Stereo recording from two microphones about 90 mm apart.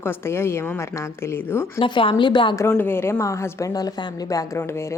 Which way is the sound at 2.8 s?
25° left (ahead or behind).